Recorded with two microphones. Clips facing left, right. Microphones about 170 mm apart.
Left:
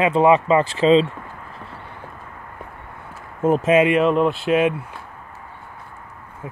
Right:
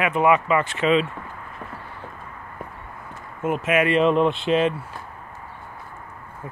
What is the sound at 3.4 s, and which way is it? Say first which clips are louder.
Speech: left 6 dB; 35° left (ahead or behind).